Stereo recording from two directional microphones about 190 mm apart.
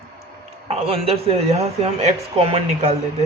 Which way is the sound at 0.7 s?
30° right (ahead or behind).